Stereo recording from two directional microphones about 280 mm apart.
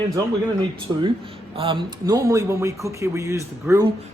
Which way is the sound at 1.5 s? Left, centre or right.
Centre.